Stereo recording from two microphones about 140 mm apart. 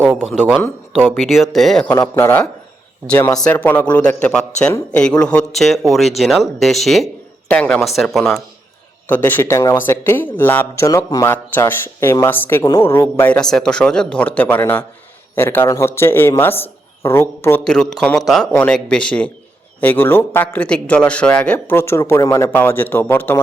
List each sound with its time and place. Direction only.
0.1 s speech: 5° right (ahead or behind)
1.9 s speech: 20° left (ahead or behind)
3.4 s speech: 10° left (ahead or behind)
9.0 s speech: 15° left (ahead or behind)
12.6 s speech: 25° left (ahead or behind)
13.3 s speech: 5° left (ahead or behind)
17.6 s speech: 5° left (ahead or behind)